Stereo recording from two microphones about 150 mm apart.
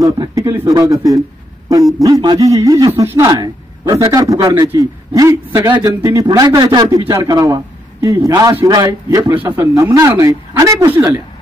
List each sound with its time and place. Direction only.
0.0 s a man's voice: 20° right (ahead or behind)
9.3 s a man's voice: 10° right (ahead or behind)